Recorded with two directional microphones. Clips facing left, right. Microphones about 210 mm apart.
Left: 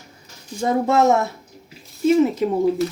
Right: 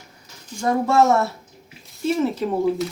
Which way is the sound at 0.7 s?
20° left (ahead or behind).